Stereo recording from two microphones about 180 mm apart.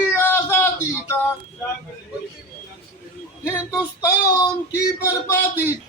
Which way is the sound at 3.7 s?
15° left (ahead or behind).